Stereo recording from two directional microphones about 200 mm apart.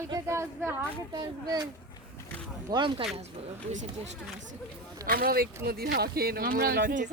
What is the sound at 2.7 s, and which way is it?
Speech, 25° right (ahead or behind).